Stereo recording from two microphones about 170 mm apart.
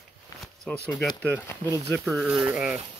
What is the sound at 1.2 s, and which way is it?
Speech, 10° left (ahead or behind).